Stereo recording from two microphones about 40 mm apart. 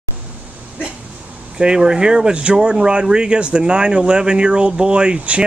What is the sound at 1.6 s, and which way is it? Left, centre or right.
Speech, right.